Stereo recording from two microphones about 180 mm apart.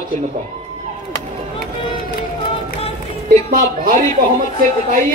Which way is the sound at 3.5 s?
50° right (ahead or behind).